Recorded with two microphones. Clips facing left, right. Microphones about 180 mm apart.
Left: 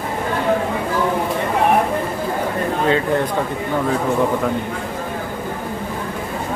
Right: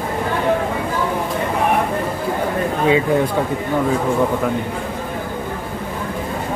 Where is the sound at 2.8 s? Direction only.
10° right (ahead or behind).